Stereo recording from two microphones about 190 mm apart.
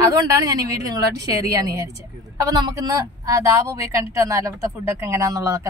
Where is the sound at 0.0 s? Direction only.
20° right (ahead or behind).